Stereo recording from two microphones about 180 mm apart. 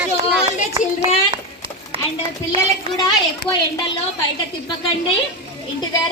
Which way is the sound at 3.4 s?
65° left (ahead or behind).